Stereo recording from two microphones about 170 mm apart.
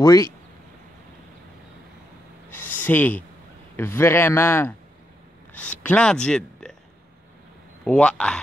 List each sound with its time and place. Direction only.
0.0 s speech: 20° left (ahead or behind)
2.5 s a sound: 10° left (ahead or behind)
3.7 s a man's voice: 15° left (ahead or behind)
7.8 s speech: 5° left (ahead or behind)